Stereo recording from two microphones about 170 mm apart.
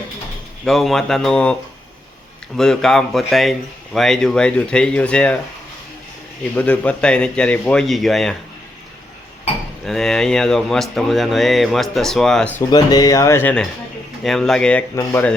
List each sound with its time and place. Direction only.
0.6 s speech: centre (ahead or behind)
2.6 s speech: 5° left (ahead or behind)
6.6 s speech: 5° left (ahead or behind)
9.8 s speech: centre (ahead or behind)
12.7 s speech: 20° left (ahead or behind)